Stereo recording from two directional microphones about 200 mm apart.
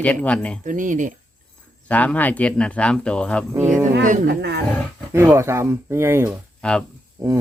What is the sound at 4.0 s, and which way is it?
Speech, 40° right (ahead or behind).